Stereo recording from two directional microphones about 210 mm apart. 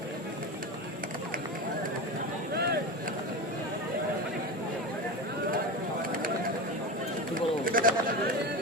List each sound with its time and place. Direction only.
7.3 s pigeon: 40° right (ahead or behind)